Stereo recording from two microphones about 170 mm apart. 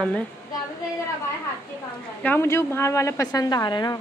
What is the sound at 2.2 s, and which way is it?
A woman's voice, 15° left (ahead or behind).